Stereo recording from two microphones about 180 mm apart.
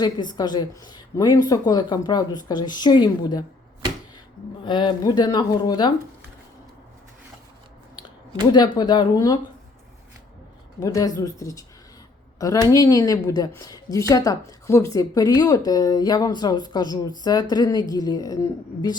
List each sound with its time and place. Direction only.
0.0 s speech: 25° left (ahead or behind)
4.6 s speech: 25° left (ahead or behind)
8.5 s speech: 25° left (ahead or behind)
10.8 s speech: 20° left (ahead or behind)